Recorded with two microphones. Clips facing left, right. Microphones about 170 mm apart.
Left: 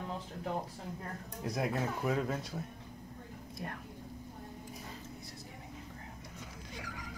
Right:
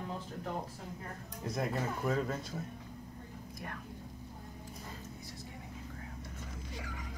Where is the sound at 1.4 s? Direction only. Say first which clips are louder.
Left 1 dB; centre (ahead or behind).